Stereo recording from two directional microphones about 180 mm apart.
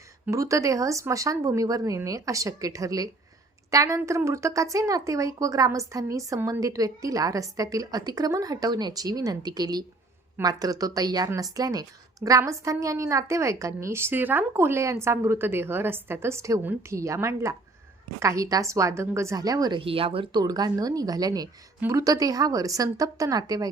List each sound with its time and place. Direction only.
0.3 s a woman's voice: 20° right (ahead or behind)